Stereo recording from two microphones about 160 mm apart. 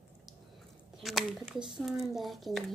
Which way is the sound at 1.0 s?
Centre (ahead or behind).